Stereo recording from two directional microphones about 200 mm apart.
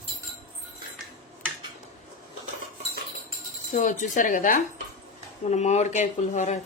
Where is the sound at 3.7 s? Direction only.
40° left (ahead or behind).